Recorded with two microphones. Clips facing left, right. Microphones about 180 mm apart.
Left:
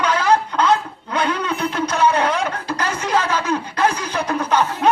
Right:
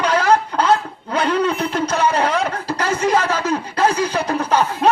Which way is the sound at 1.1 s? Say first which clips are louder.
Right 4 dB; 30° right (ahead or behind).